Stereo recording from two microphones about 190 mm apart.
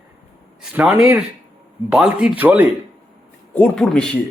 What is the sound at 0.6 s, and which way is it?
Speech, 5° right (ahead or behind).